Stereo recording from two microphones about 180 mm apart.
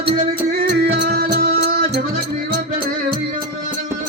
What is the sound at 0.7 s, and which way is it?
Music, 65° right (ahead or behind).